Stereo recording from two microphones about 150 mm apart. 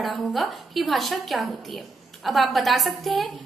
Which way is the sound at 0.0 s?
Centre (ahead or behind).